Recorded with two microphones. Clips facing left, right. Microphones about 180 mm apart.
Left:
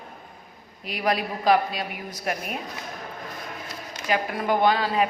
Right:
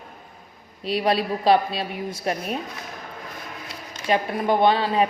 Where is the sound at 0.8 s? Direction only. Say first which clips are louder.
Right 4 dB; 30° right (ahead or behind).